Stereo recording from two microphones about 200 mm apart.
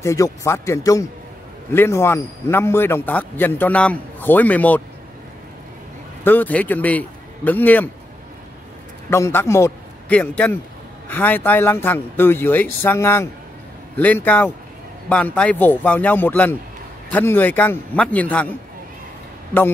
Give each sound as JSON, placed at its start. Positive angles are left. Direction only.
{"t": 0.0, "sound": "a man's voice", "side_deg": 15}
{"t": 6.2, "sound": "a man's voice", "side_deg": 10}
{"t": 9.1, "sound": "a man's voice", "side_deg": 10}